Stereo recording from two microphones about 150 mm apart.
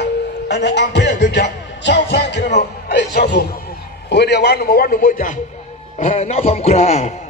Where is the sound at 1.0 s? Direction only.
90° left.